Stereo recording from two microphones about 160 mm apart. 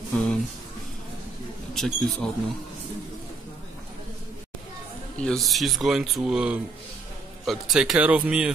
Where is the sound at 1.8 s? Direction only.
Centre (ahead or behind).